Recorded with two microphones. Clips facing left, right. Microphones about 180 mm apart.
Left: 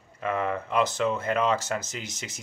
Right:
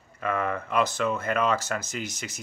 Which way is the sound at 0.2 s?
20° left (ahead or behind).